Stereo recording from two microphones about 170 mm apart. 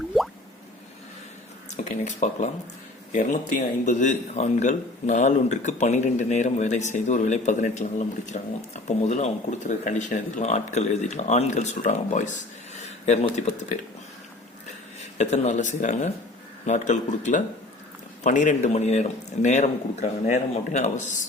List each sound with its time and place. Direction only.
1.7 s speech: 45° left (ahead or behind)
15.2 s speech: 45° left (ahead or behind)